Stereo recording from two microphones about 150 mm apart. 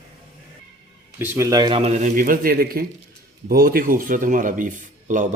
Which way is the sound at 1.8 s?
45° right (ahead or behind).